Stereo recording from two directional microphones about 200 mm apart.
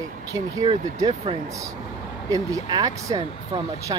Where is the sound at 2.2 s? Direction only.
15° right (ahead or behind).